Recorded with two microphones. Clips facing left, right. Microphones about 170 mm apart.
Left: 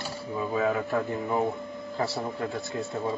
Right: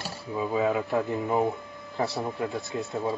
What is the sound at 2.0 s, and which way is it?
Speech, centre (ahead or behind).